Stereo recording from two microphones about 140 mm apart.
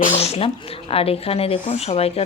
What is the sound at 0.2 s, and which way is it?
A woman's voice, 45° left (ahead or behind).